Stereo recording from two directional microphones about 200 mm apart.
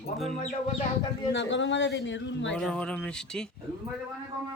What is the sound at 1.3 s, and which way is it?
Speech, 60° left (ahead or behind).